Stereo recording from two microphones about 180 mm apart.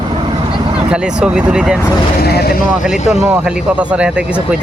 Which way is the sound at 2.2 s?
60° left (ahead or behind).